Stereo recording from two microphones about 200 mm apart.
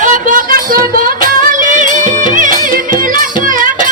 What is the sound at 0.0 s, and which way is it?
Music, 40° right (ahead or behind).